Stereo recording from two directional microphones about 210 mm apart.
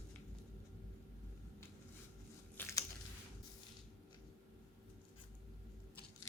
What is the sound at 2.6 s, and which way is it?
Biting, 15° left (ahead or behind).